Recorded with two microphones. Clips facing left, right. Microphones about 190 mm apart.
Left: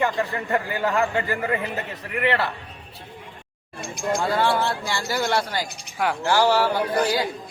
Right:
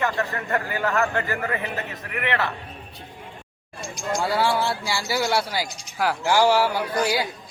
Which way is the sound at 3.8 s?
60° left (ahead or behind).